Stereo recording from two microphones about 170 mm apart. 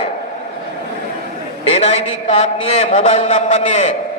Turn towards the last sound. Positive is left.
turn(degrees=45)  # may be behind; listen again after turning